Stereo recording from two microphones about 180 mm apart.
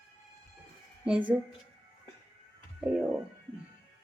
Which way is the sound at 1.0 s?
5° right (ahead or behind).